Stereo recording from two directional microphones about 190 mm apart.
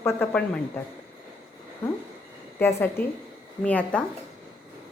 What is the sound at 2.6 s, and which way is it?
A woman's voice, 10° left (ahead or behind).